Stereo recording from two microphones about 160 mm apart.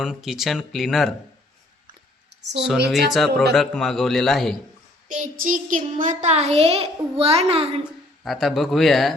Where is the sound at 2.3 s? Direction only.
90° right.